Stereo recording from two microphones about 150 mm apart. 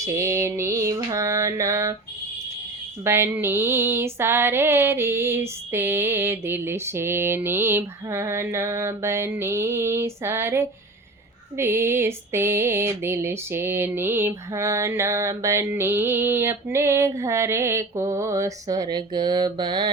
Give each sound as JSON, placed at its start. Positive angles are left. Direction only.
{"t": 0.0, "sound": "mantra", "side_deg": -20}
{"t": 3.0, "sound": "female singing", "side_deg": -15}